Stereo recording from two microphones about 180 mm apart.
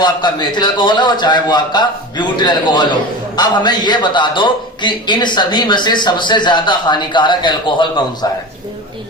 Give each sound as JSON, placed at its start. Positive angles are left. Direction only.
{"t": 0.0, "sound": "a man's voice", "side_deg": 25}